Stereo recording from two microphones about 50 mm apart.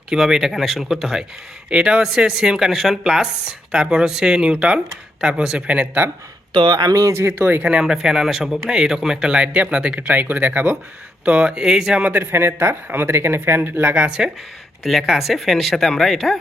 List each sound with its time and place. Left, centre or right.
0.1 s speech: centre
1.7 s speech: centre
7.1 s speech: right
7.3 s speech: right
7.6 s speech: centre
10.1 s speech: right
11.3 s speech: right
12.1 s speech: right
13.9 s speech: centre
14.8 s speech: centre